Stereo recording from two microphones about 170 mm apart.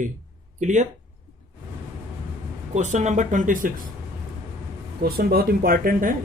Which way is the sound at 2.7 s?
45° right (ahead or behind).